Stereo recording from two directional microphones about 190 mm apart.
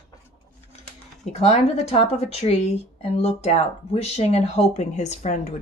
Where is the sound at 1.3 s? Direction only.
35° left (ahead or behind).